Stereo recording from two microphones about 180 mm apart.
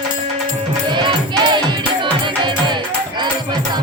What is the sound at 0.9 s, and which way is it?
Music, 25° right (ahead or behind).